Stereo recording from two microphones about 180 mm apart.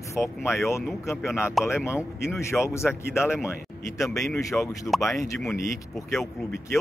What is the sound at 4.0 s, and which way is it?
Speech, centre (ahead or behind).